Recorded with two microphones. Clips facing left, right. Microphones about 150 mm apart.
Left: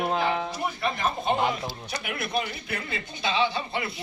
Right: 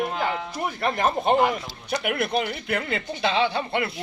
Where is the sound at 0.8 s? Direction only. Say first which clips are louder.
Right 6 dB; 60° right (ahead or behind).